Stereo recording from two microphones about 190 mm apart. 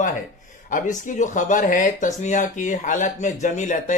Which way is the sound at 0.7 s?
45° left (ahead or behind).